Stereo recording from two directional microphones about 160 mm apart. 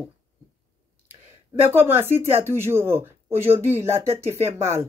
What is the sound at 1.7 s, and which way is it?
Speech, 15° right (ahead or behind).